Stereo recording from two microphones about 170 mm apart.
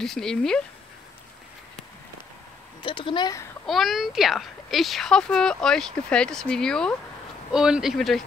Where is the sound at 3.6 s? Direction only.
Centre (ahead or behind).